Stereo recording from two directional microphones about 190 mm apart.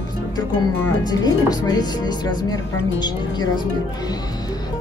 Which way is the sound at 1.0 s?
20° left (ahead or behind).